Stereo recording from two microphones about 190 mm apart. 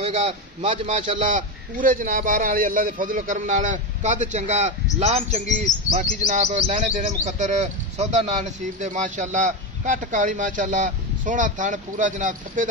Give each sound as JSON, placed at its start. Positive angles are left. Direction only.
{"t": 0.0, "sound": "speech", "side_deg": -30}
{"t": 1.1, "sound": "a man's voice", "side_deg": -45}